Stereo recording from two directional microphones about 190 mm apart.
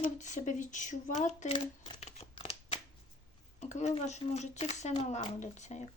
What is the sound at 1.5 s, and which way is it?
Shuffling cards, 25° left (ahead or behind).